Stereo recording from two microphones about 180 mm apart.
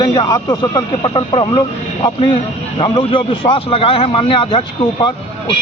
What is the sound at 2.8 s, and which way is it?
Speech, 25° left (ahead or behind).